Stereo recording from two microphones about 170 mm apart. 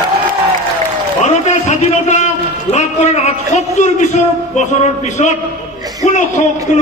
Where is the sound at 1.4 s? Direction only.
45° left (ahead or behind).